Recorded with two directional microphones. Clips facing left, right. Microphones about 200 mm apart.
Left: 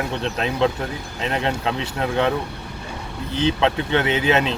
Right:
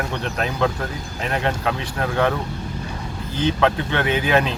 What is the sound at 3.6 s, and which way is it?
Speech, 25° left (ahead or behind).